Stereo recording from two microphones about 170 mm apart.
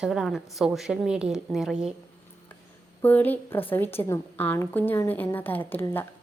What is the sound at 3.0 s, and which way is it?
A woman's voice, 10° left (ahead or behind).